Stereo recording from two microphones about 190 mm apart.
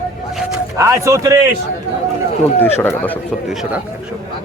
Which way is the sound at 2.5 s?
10° left (ahead or behind).